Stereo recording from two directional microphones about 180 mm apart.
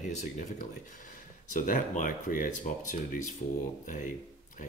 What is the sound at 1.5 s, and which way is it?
Speech, 45° left (ahead or behind).